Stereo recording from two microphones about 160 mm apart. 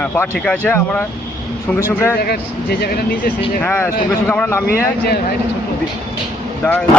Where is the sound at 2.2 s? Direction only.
75° left (ahead or behind).